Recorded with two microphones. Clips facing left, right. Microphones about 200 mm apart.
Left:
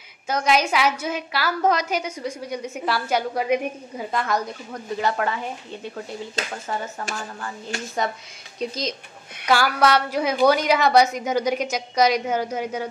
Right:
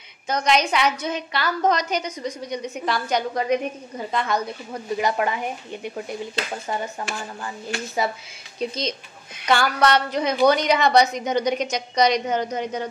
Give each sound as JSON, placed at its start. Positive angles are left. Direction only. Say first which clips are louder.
{"t": 0.3, "sound": "a woman's voice", "louder": "even", "side_deg": 5}
{"t": 4.9, "sound": "speech", "louder": "right 1 dB", "side_deg": -15}
{"t": 8.5, "sound": "a woman's voice", "louder": "right 1 dB", "side_deg": 0}